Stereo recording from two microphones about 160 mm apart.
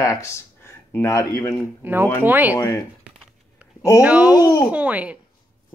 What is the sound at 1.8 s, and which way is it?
Speech, 15° right (ahead or behind).